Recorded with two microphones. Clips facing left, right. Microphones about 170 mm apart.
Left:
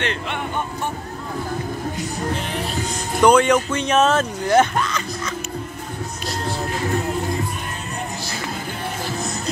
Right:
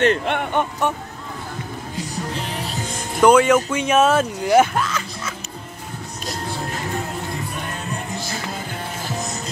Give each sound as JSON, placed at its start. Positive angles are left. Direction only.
{"t": 0.0, "sound": "speech", "side_deg": -50}
{"t": 3.2, "sound": "speech", "side_deg": -5}